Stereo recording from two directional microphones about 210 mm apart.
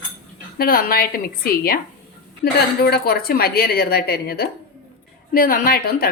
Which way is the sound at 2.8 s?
45° left (ahead or behind).